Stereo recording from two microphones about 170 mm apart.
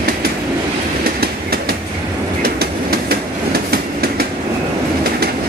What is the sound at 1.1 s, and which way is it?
Train, 65° right (ahead or behind).